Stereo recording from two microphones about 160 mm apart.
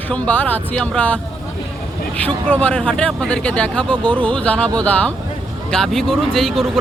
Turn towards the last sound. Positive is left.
turn(degrees=0)  # may be behind; listen again after turning